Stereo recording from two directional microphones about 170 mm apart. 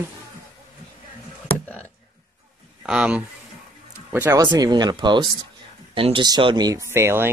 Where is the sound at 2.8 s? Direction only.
5° right (ahead or behind).